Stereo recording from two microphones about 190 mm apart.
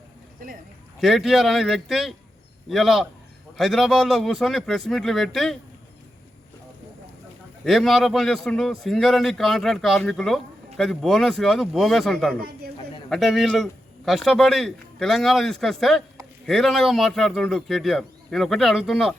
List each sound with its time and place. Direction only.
1.0 s speech: centre (ahead or behind)
7.6 s speech: centre (ahead or behind)